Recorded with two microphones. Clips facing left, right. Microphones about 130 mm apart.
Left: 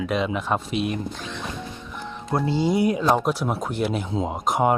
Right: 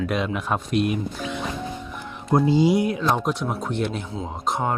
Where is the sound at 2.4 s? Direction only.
15° right (ahead or behind).